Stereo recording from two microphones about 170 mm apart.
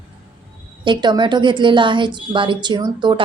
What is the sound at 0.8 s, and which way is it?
A woman's voice, 25° right (ahead or behind).